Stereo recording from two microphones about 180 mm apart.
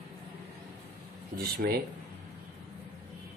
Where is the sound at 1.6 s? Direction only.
60° right (ahead or behind).